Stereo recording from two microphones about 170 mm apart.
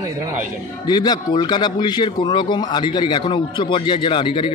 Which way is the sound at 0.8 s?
25° left (ahead or behind).